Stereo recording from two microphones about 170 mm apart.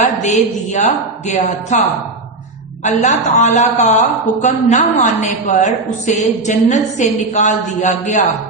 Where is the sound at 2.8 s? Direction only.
45° left (ahead or behind).